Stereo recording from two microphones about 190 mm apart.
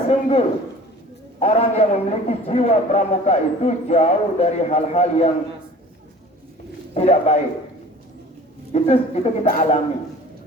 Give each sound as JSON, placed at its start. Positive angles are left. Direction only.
{"t": 0.1, "sound": "a man's voice", "side_deg": 30}
{"t": 6.9, "sound": "a man's voice", "side_deg": 35}
{"t": 8.7, "sound": "a man's voice", "side_deg": 35}